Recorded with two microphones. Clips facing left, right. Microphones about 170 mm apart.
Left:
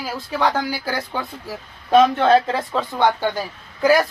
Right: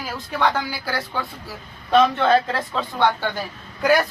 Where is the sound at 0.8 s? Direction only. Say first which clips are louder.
Left 1 dB; 15° left (ahead or behind).